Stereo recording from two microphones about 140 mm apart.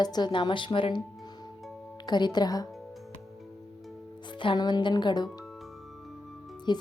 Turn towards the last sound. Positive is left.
turn(degrees=30)  # may be behind; listen again after turning